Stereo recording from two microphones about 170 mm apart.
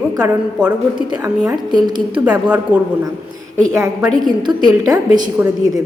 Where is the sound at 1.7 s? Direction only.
25° right (ahead or behind).